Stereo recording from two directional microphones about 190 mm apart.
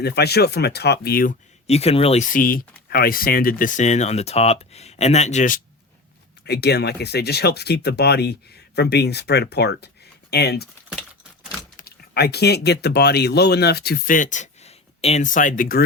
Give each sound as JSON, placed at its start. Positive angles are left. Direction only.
{"t": 0.0, "sound": "speech", "side_deg": 60}
{"t": 6.4, "sound": "speech", "side_deg": 60}
{"t": 11.8, "sound": "speech", "side_deg": 55}